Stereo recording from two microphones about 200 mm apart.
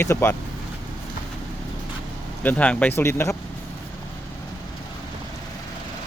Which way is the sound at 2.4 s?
5° left (ahead or behind).